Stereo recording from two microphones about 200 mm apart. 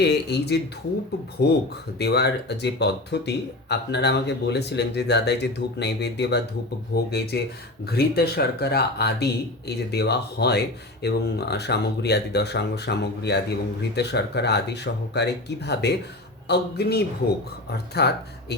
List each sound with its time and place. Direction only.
0.0 s a man's voice: 55° left (ahead or behind)